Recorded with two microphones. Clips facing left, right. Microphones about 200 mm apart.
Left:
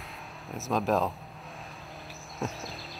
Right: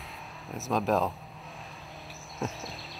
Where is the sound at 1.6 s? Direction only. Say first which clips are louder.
Left 1 dB; centre (ahead or behind).